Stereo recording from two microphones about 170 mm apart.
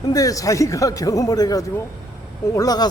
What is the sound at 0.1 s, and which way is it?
A man's voice, 20° left (ahead or behind).